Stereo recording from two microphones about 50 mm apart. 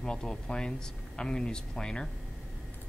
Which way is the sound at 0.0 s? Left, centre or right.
Centre.